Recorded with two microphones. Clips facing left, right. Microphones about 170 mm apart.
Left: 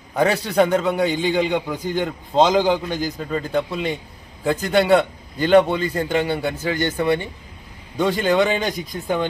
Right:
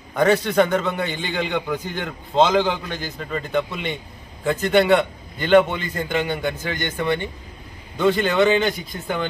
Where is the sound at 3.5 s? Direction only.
35° left (ahead or behind).